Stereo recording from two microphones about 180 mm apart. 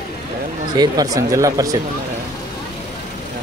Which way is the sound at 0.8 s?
20° right (ahead or behind).